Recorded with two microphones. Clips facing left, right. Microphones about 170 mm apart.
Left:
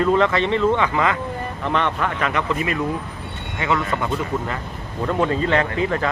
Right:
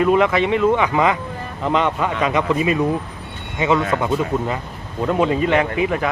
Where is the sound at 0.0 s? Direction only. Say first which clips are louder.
Right 2 dB; 10° right (ahead or behind).